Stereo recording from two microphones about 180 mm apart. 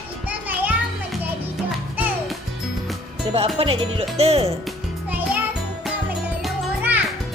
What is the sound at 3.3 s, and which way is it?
Music, 30° right (ahead or behind).